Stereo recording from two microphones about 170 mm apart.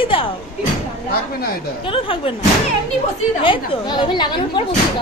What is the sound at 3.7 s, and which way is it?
Speech, 30° left (ahead or behind).